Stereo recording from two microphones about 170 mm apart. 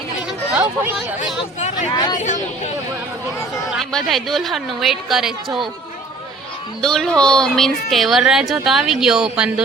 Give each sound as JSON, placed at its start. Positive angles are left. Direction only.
{"t": 0.5, "sound": "speech", "side_deg": -10}
{"t": 1.7, "sound": "speech", "side_deg": 25}
{"t": 2.1, "sound": "speech", "side_deg": 45}
{"t": 3.7, "sound": "a woman's voice", "side_deg": 0}
{"t": 6.8, "sound": "a woman's voice", "side_deg": 5}